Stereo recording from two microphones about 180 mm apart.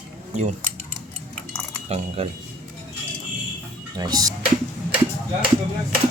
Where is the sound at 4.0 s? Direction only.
20° right (ahead or behind).